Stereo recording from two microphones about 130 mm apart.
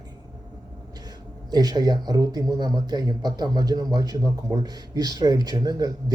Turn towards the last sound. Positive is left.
turn(degrees=-30)  # may be behind; listen again after turning